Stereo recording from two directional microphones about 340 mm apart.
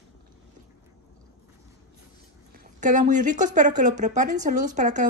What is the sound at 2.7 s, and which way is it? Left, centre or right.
Speech, right.